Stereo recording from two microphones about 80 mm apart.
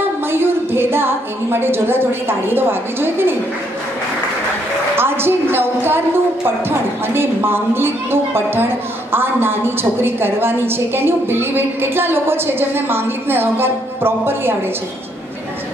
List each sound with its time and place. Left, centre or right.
0.3 s a woman's voice: right
4.9 s a woman's voice: right
7.2 s a woman's voice: right